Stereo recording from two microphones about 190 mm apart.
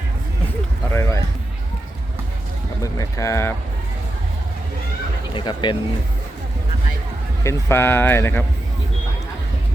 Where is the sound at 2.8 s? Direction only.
15° left (ahead or behind).